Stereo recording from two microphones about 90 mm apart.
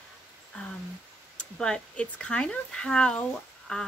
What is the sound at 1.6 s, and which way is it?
Speech, 10° left (ahead or behind).